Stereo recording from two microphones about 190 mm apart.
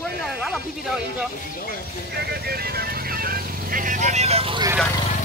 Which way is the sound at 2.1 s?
55° right (ahead or behind).